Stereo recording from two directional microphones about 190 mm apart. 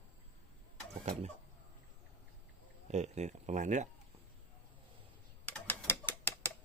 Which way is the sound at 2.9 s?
35° right (ahead or behind).